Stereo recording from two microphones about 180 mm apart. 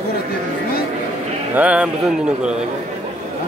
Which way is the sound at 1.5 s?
10° right (ahead or behind).